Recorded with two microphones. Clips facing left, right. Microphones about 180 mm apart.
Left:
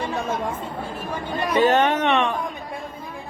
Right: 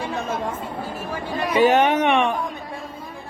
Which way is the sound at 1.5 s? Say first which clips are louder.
Right 2 dB; 10° right (ahead or behind).